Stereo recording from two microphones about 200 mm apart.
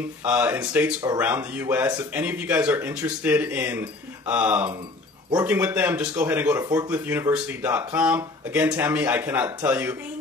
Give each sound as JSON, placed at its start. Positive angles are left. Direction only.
{"t": 0.2, "sound": "speech", "side_deg": -10}